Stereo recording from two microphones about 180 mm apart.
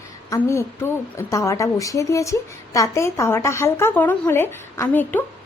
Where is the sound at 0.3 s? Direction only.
15° left (ahead or behind).